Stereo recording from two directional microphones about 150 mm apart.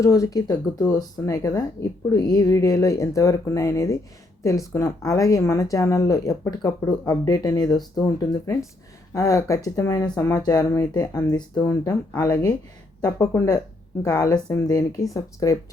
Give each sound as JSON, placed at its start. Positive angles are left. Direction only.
{"t": 0.0, "sound": "speech", "side_deg": 20}